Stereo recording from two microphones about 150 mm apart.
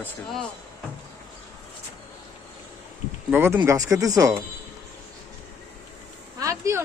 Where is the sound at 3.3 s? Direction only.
15° right (ahead or behind).